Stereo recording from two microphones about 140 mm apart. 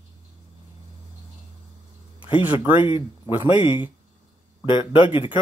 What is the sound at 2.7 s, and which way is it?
Speech, 40° left (ahead or behind).